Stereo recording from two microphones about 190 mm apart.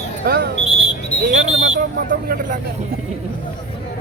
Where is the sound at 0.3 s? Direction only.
55° right (ahead or behind).